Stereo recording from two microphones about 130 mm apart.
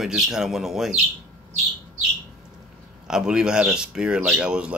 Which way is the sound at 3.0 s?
5° right (ahead or behind).